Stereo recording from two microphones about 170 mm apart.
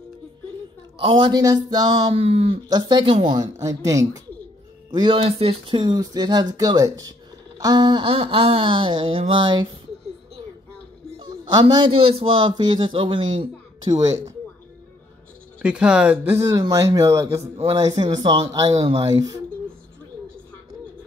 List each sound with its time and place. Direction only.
0.9 s speech: 30° right (ahead or behind)
4.9 s speech: 30° right (ahead or behind)
11.1 s a man's voice: 25° right (ahead or behind)
15.6 s speech: 5° right (ahead or behind)
17.4 s a man's voice: 35° right (ahead or behind)
17.7 s speech: 20° right (ahead or behind)